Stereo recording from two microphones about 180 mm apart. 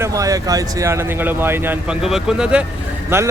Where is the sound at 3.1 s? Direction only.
15° right (ahead or behind).